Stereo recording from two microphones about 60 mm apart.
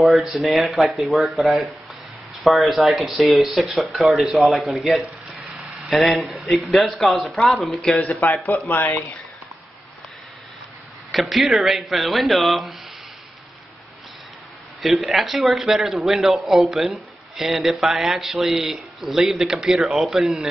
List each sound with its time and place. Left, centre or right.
0.0 s a man's voice: centre
8.5 s speech: left
11.1 s a man's voice: centre
14.8 s a man's voice: centre